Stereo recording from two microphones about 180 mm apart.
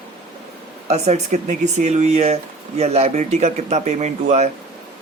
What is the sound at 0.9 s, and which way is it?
Speech, 35° right (ahead or behind).